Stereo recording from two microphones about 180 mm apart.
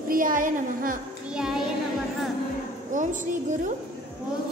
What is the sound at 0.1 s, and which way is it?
Speech, 50° right (ahead or behind).